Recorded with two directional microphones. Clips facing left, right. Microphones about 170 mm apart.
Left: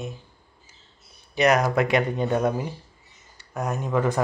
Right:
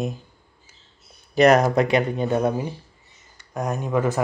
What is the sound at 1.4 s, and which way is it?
Speech, 45° right (ahead or behind).